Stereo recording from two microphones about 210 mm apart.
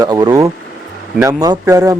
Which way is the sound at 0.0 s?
20° right (ahead or behind).